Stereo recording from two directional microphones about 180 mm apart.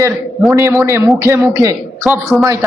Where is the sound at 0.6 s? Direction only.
15° right (ahead or behind).